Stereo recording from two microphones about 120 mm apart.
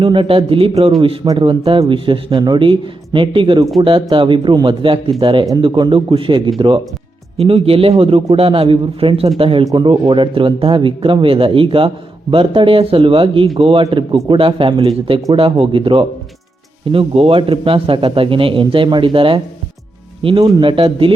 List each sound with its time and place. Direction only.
0.0 s a man's voice: 45° right (ahead or behind)
1.2 s a man's voice: 40° right (ahead or behind)